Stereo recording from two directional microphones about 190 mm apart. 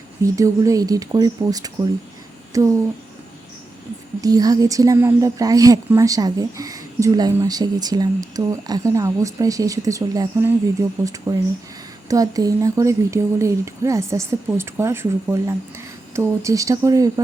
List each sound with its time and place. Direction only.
0.2 s a woman's voice: 15° right (ahead or behind)
4.2 s a woman's voice: 20° right (ahead or behind)